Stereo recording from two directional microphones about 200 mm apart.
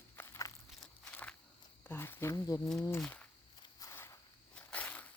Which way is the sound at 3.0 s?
5° left (ahead or behind).